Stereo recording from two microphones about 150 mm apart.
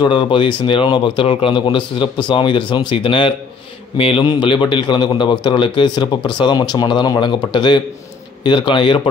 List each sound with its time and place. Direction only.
0.0 s speech: 30° left (ahead or behind)